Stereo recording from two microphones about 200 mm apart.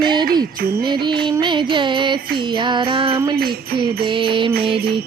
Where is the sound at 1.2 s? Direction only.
25° right (ahead or behind).